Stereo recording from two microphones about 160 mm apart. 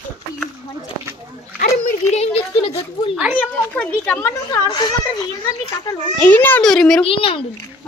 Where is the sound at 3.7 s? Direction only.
5° left (ahead or behind); by 5.3 s 25° left (ahead or behind).